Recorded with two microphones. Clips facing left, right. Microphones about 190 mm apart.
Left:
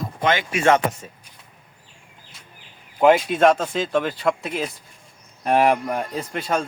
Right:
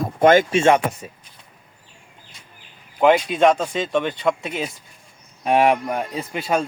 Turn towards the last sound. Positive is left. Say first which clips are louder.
# right 2 dB
turn(degrees=-5)  # may be behind; listen again after turning